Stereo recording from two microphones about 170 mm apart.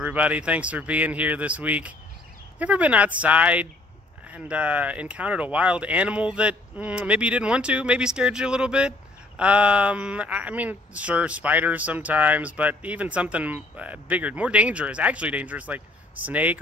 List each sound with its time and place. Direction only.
0.0 s speech: 10° right (ahead or behind)